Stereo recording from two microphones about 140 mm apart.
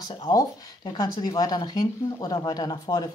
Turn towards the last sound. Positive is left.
turn(degrees=30)  # may be behind; listen again after turning